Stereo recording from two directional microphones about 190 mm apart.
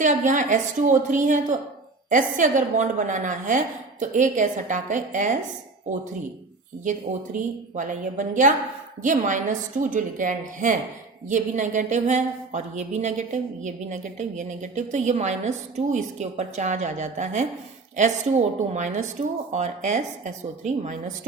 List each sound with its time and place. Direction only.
0.0 s a woman's voice: 40° right (ahead or behind)
6.8 s a woman's voice: 40° right (ahead or behind)